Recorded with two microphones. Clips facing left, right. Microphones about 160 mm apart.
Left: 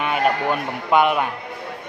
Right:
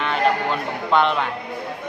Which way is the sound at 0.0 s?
10° left (ahead or behind).